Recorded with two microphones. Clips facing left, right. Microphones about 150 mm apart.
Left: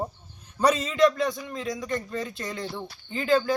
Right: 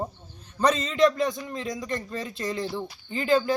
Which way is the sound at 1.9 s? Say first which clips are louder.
Left 1 dB; centre (ahead or behind).